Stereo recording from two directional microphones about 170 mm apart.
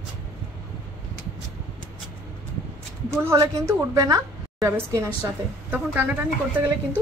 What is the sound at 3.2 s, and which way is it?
A woman's voice, 20° right (ahead or behind).